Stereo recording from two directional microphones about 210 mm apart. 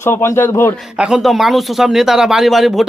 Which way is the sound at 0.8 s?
5° right (ahead or behind).